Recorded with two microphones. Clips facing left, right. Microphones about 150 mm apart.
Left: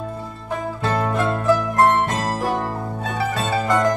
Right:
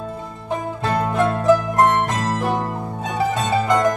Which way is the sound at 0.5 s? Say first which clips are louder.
Right 1 dB; 20° right (ahead or behind).